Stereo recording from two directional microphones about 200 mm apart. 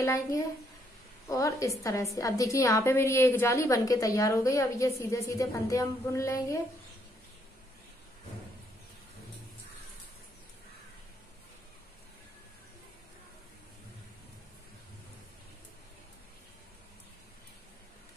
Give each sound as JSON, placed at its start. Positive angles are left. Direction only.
{"t": 0.0, "sound": "a woman's voice", "side_deg": 15}